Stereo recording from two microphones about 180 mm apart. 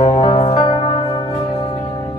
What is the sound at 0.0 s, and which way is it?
Music, 30° left (ahead or behind).